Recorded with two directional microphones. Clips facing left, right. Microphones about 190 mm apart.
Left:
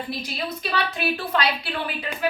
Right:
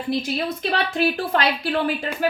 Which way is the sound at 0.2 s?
50° right (ahead or behind).